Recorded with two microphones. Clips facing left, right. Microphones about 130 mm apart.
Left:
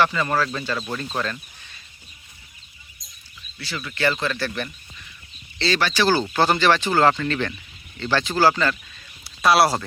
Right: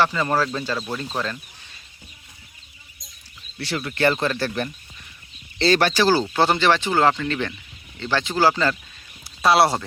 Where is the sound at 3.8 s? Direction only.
50° right (ahead or behind).